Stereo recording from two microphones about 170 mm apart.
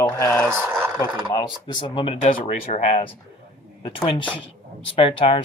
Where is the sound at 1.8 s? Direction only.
30° left (ahead or behind).